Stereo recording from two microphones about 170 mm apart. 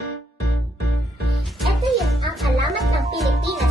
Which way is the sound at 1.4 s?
Centre (ahead or behind).